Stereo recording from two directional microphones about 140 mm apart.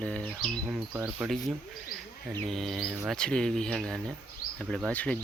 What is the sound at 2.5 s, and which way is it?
Speech, centre (ahead or behind).